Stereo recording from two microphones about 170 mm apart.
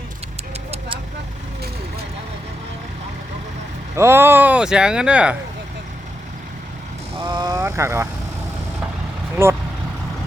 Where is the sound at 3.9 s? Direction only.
15° right (ahead or behind).